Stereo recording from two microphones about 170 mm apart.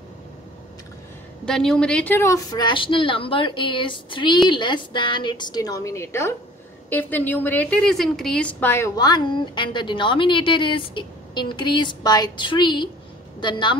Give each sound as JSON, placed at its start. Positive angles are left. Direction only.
{"t": 1.4, "sound": "a woman's voice", "side_deg": 0}